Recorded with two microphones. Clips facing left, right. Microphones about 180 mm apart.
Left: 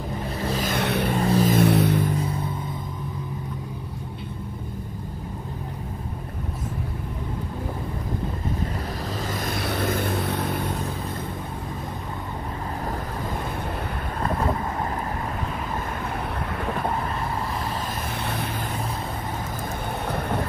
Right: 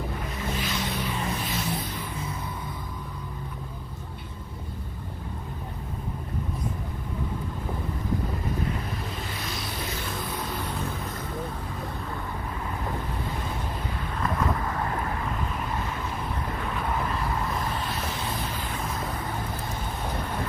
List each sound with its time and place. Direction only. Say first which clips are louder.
0.4 s vehicle: left 5 dB; 35° left (ahead or behind)
0.7 s vehicle: left 7 dB; 65° left (ahead or behind)
1.1 s a sound: left 10 dB; 40° left (ahead or behind)
1.5 s vehicle: left 12 dB; 65° left (ahead or behind)
2.0 s a sound: left 10 dB; 40° left (ahead or behind)
9.3 s vehicle: left 7 dB; 55° left (ahead or behind); by 10.5 s 70° left (ahead or behind)
18.1 s vehicle: left 3 dB; 60° left (ahead or behind)